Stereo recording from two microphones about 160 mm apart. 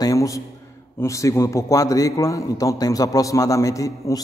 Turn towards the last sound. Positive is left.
turn(degrees=20)  # may be behind; listen again after turning